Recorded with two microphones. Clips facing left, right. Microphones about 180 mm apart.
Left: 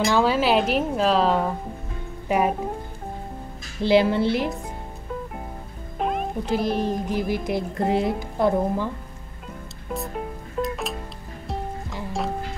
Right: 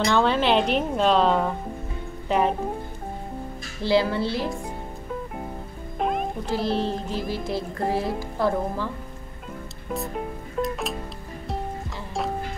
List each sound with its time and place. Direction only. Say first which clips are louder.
0.0 s speech: left 1 dB; 5° left (ahead or behind)
3.8 s speech: left 3 dB; 20° left (ahead or behind)
5.9 s music: even; centre (ahead or behind)
6.4 s speech: left 2 dB; 15° left (ahead or behind)
9.8 s music: even; centre (ahead or behind)